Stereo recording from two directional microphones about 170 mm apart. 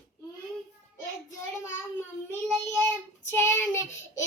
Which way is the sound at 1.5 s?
15° left (ahead or behind).